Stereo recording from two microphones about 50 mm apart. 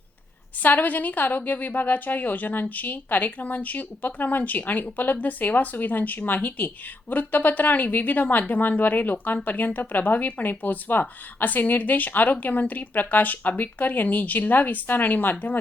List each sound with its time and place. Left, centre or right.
0.6 s a woman's voice: left